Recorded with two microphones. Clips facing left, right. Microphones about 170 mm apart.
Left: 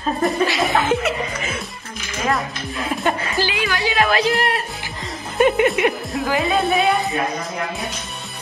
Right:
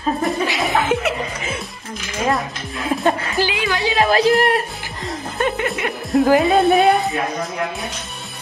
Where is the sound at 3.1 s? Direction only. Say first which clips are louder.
Right 2 dB; 20° right (ahead or behind).